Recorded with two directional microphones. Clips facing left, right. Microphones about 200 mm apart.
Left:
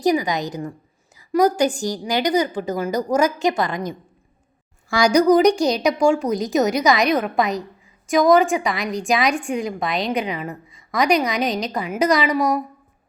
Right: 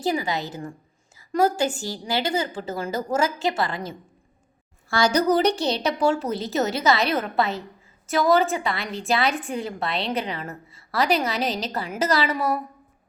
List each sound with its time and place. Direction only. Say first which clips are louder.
0.0 s a woman's voice: left 6 dB; 15° left (ahead or behind)